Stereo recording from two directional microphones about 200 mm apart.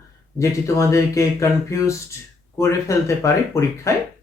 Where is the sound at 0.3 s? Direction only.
15° left (ahead or behind).